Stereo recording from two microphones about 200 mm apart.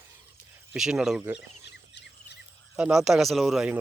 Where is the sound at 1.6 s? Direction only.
60° left (ahead or behind).